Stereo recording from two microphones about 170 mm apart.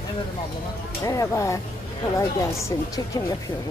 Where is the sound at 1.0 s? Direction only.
20° left (ahead or behind).